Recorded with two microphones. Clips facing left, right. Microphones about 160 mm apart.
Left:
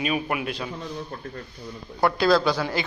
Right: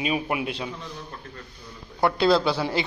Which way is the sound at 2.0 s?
25° right (ahead or behind).